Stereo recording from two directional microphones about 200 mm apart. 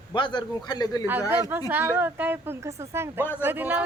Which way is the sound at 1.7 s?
10° right (ahead or behind).